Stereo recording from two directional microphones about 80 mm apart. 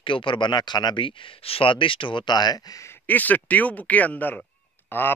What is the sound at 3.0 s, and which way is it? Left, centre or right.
Speech, left.